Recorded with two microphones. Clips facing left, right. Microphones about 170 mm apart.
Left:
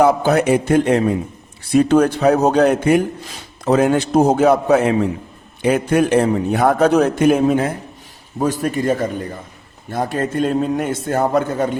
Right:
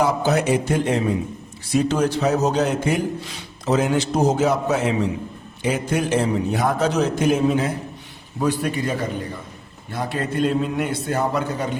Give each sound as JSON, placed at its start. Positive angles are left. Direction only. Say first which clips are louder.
{"t": 0.0, "sound": "a man's voice", "louder": "left 5 dB", "side_deg": 55}
{"t": 8.4, "sound": "a man's voice", "louder": "left 3 dB", "side_deg": 45}